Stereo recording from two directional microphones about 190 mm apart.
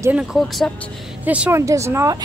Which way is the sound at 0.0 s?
5° right (ahead or behind).